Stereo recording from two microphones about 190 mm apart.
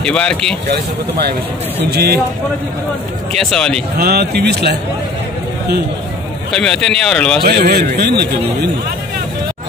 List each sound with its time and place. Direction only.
0.0 s speech: 5° left (ahead or behind)
0.7 s a man's voice: 60° right (ahead or behind)
3.3 s speech: 5° left (ahead or behind)
4.0 s a man's voice: 55° right (ahead or behind)
6.5 s speech: 5° left (ahead or behind)
7.4 s a man's voice: 55° right (ahead or behind)